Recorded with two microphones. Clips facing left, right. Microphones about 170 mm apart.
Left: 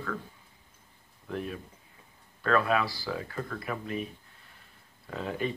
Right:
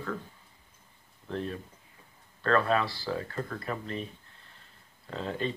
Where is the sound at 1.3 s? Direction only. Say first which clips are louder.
Right 1 dB; 10° left (ahead or behind).